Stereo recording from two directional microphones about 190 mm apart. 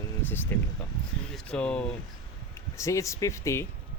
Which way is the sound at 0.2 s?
10° left (ahead or behind).